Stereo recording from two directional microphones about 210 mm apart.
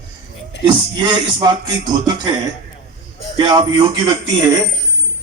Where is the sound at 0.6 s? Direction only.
20° right (ahead or behind).